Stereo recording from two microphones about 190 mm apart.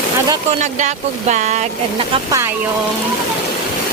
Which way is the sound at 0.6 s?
40° right (ahead or behind).